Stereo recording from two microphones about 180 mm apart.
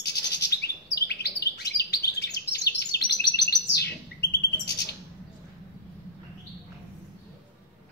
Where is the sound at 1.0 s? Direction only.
65° left (ahead or behind).